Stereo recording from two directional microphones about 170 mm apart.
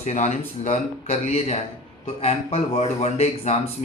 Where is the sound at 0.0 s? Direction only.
40° left (ahead or behind).